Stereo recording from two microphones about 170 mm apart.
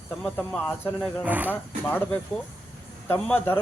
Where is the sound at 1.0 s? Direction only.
5° right (ahead or behind).